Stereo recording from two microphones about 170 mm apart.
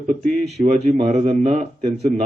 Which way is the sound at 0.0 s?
45° right (ahead or behind).